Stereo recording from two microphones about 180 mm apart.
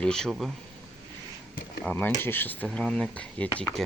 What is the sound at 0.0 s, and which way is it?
Speech, 5° left (ahead or behind).